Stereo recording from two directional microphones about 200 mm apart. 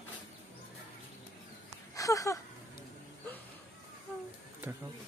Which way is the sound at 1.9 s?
15° left (ahead or behind).